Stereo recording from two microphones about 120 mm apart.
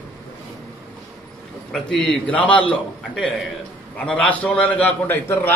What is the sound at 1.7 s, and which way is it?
Speech, 5° left (ahead or behind).